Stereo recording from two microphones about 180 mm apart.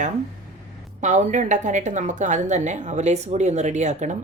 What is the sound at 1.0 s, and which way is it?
A woman's voice, 40° right (ahead or behind).